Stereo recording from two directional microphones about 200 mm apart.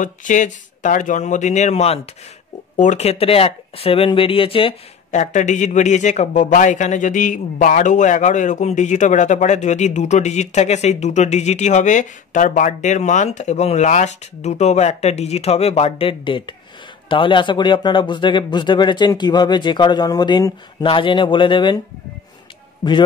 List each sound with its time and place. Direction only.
0.0 s speech: 40° left (ahead or behind); by 21.7 s 25° left (ahead or behind)